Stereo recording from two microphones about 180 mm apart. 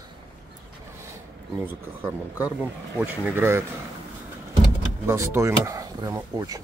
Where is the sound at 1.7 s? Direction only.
10° right (ahead or behind).